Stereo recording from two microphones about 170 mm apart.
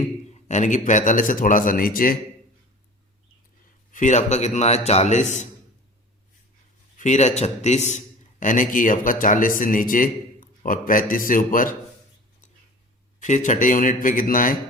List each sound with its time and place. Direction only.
0.4 s speech: 45° left (ahead or behind)
3.9 s a man's voice: 45° left (ahead or behind)
6.9 s a man's voice: 45° left (ahead or behind)
13.1 s speech: 45° left (ahead or behind)